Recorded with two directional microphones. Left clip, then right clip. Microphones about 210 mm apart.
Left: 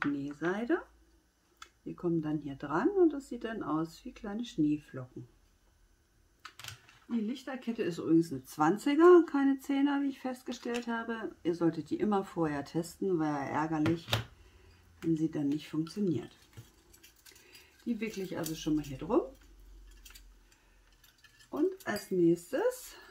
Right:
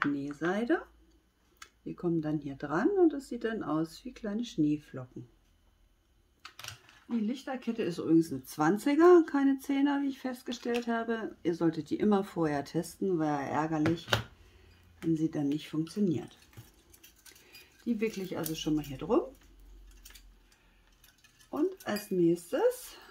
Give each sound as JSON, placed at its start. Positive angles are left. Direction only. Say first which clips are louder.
{"t": 0.1, "sound": "speech", "louder": "right 2 dB", "side_deg": -25}
{"t": 7.2, "sound": "speech", "louder": "right 3 dB", "side_deg": -15}
{"t": 15.1, "sound": "speech", "louder": "right 2 dB", "side_deg": -20}
{"t": 17.8, "sound": "speech", "louder": "right 4 dB", "side_deg": -25}
{"t": 21.5, "sound": "speech", "louder": "even", "side_deg": -20}